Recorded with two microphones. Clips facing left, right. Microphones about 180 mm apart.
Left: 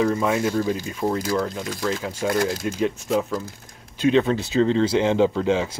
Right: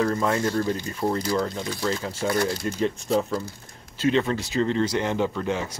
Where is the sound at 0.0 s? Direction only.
10° left (ahead or behind).